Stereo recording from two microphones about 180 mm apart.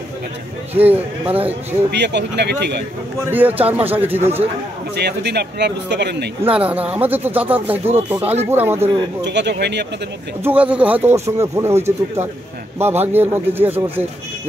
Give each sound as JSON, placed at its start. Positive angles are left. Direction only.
{"t": 0.7, "sound": "speech", "side_deg": -10}
{"t": 1.9, "sound": "speech", "side_deg": -70}
{"t": 3.3, "sound": "speech", "side_deg": -10}
{"t": 4.9, "sound": "speech", "side_deg": -65}
{"t": 6.4, "sound": "speech", "side_deg": -10}
{"t": 9.2, "sound": "speech", "side_deg": -75}
{"t": 10.4, "sound": "speech", "side_deg": -10}